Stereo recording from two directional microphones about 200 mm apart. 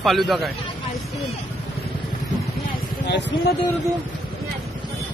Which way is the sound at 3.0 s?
60° left (ahead or behind).